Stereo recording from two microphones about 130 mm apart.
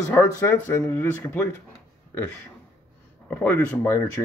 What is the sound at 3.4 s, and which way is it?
Speech, 15° left (ahead or behind).